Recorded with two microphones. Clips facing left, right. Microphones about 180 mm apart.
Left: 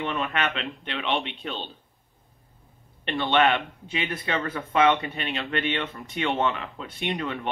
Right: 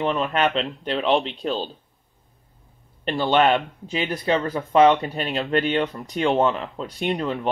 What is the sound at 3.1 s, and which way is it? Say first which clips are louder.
Speech: right 4 dB; 40° right (ahead or behind).